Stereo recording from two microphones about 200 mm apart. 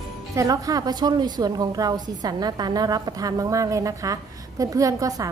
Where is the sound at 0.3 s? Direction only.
15° right (ahead or behind).